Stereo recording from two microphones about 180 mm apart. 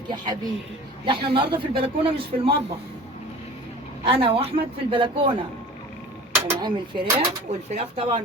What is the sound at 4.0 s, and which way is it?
A woman's voice, 30° right (ahead or behind).